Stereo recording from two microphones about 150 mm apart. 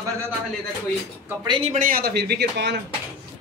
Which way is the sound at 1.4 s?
35° right (ahead or behind).